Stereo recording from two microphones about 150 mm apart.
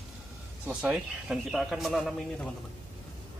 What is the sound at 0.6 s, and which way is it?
Speech, 5° right (ahead or behind).